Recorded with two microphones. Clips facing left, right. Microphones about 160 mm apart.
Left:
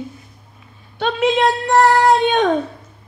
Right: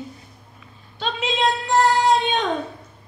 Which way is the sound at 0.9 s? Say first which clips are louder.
Left 8 dB; 60° left (ahead or behind).